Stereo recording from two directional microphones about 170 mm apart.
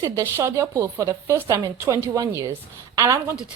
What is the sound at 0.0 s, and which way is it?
Speech, 15° right (ahead or behind).